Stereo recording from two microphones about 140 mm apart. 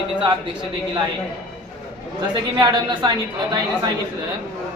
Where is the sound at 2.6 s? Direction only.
35° right (ahead or behind).